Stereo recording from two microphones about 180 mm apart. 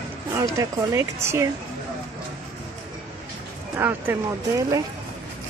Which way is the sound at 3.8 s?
10° right (ahead or behind).